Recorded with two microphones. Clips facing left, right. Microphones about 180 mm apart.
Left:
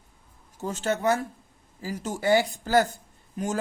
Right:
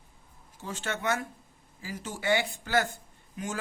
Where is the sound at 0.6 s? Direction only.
40° left (ahead or behind).